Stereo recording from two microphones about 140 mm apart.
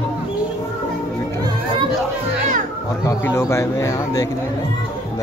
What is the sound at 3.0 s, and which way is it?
Speech, 20° left (ahead or behind).